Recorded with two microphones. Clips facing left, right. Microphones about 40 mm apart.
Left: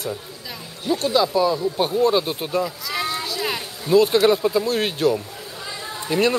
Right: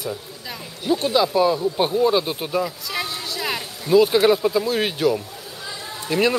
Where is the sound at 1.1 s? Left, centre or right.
Centre.